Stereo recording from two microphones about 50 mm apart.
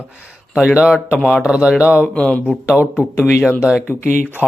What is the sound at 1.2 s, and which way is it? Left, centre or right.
Speech, centre.